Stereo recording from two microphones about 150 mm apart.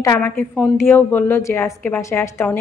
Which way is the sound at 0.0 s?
15° left (ahead or behind).